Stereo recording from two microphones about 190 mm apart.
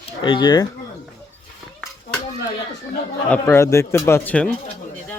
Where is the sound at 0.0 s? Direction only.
25° left (ahead or behind).